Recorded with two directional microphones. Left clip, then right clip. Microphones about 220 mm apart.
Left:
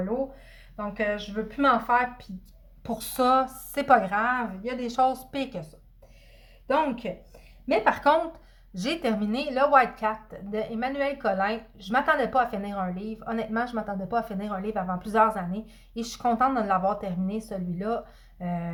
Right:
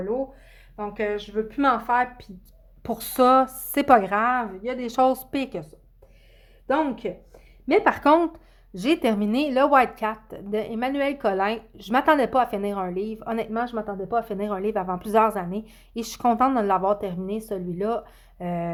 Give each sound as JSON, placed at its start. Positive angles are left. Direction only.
{"t": 0.8, "sound": "a woman's voice", "side_deg": -50}
{"t": 7.7, "sound": "a woman's voice", "side_deg": -50}